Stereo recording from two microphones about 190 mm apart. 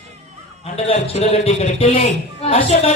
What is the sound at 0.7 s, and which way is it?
A man's voice, 35° left (ahead or behind).